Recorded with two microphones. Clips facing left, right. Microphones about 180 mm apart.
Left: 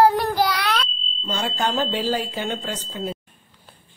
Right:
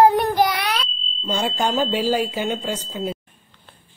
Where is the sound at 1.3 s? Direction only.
15° right (ahead or behind).